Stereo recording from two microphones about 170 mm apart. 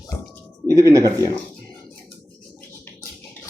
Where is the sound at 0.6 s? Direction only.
20° right (ahead or behind).